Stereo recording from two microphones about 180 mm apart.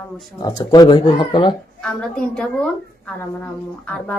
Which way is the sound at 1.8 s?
5° left (ahead or behind).